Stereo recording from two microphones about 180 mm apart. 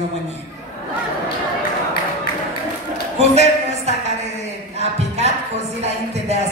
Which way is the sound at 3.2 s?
40° right (ahead or behind).